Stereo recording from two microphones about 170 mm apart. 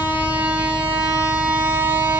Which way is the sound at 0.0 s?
10° right (ahead or behind).